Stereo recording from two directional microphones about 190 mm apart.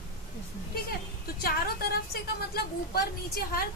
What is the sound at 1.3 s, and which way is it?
A woman's voice, 55° left (ahead or behind).